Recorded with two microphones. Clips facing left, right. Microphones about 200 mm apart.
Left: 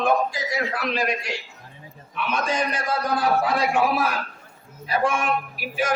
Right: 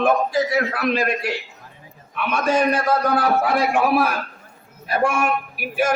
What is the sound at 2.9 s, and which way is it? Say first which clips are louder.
A man's voice: right 4 dB; 60° right (ahead or behind).